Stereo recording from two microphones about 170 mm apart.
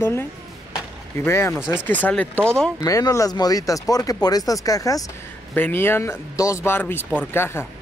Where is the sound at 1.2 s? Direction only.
15° left (ahead or behind).